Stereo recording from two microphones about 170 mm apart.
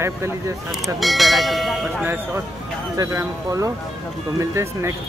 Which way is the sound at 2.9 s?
20° right (ahead or behind).